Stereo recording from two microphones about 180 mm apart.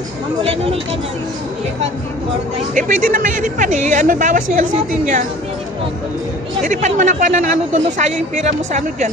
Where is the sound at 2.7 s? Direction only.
50° right (ahead or behind).